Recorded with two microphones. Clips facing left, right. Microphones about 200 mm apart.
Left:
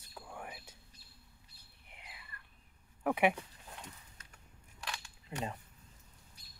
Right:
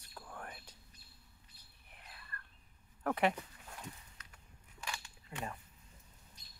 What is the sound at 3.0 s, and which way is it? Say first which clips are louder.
Speech: left 3 dB; 10° left (ahead or behind).